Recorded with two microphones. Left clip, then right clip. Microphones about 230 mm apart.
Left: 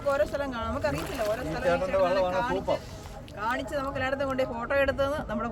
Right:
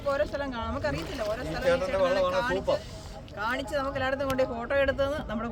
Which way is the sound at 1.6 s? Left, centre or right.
Right.